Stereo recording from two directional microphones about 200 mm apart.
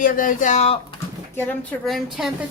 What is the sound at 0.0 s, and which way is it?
Speech, 45° left (ahead or behind).